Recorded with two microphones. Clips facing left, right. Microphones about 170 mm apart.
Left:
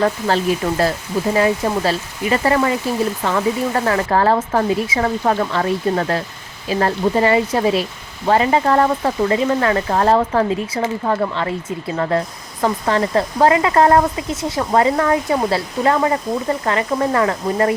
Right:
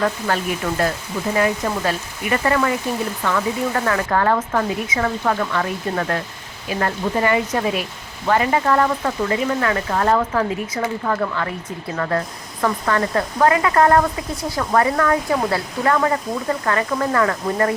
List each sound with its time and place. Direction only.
0.0 s speech: 30° left (ahead or behind)
3.8 s speech: 30° left (ahead or behind)